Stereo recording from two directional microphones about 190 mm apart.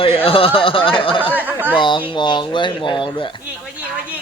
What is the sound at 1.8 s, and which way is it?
Speech, 25° left (ahead or behind).